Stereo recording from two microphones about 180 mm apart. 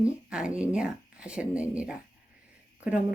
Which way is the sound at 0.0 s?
5° right (ahead or behind).